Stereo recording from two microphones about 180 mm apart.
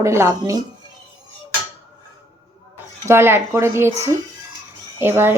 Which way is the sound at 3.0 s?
15° right (ahead or behind).